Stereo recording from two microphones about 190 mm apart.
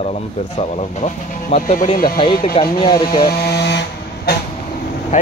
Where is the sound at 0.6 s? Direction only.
35° left (ahead or behind).